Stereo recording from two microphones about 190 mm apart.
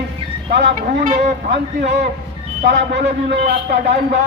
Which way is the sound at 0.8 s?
45° right (ahead or behind).